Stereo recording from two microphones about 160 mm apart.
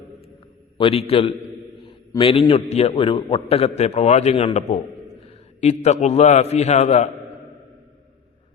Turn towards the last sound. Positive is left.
turn(degrees=45)  # may be behind; listen again after turning